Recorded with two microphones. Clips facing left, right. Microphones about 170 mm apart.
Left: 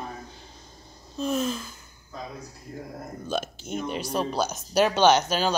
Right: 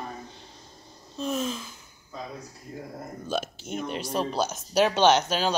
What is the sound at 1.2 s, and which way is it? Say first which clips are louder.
Speech: left 2 dB; centre (ahead or behind).